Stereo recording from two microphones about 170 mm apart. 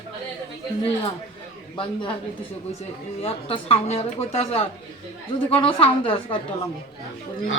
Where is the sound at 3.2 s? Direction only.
35° left (ahead or behind).